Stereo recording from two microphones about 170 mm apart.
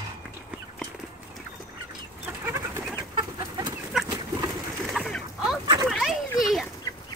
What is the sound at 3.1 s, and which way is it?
Chicken, 25° right (ahead or behind).